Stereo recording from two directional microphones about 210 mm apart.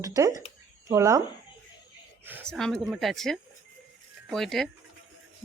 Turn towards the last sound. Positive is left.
turn(degrees=0)  # may be behind; listen again after turning